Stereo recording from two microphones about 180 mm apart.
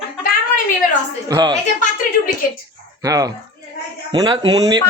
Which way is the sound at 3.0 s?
20° right (ahead or behind).